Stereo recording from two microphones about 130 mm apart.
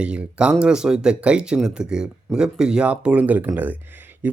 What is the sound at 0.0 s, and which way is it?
Speech, 10° right (ahead or behind).